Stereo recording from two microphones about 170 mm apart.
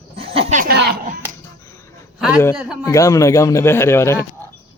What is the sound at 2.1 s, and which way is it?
Speech, 5° right (ahead or behind).